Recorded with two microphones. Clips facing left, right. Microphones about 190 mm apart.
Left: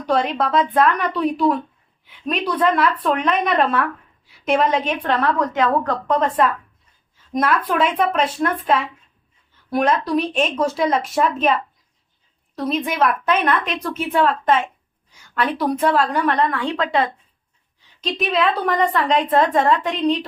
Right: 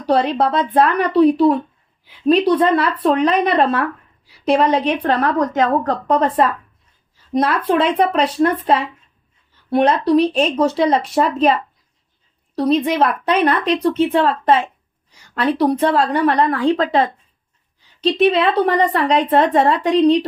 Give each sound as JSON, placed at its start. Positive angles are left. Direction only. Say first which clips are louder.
{"t": 0.0, "sound": "a woman's voice", "louder": "right 4 dB", "side_deg": -30}
{"t": 12.5, "sound": "a woman's voice", "louder": "right 5 dB", "side_deg": -30}